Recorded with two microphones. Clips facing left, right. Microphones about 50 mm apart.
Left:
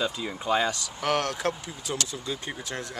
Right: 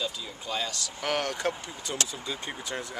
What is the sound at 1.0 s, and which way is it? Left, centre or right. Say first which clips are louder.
Speech: left 3 dB; centre.